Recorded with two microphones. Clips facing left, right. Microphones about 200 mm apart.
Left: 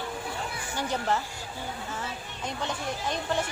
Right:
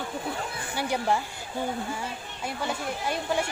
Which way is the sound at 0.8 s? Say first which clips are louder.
Right 2 dB; 10° right (ahead or behind).